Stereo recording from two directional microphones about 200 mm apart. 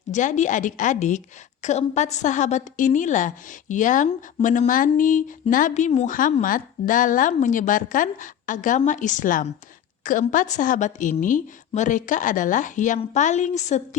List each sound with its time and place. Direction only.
0.1 s a woman's voice: 40° left (ahead or behind)